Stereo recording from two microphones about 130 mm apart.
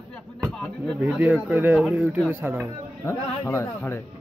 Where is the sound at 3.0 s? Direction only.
20° left (ahead or behind).